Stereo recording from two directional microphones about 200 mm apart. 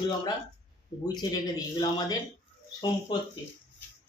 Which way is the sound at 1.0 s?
20° left (ahead or behind).